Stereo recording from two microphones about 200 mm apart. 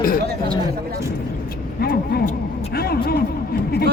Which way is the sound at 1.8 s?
50° left (ahead or behind).